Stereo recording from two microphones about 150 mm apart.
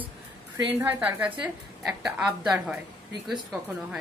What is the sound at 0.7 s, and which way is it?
A woman's voice, 10° right (ahead or behind).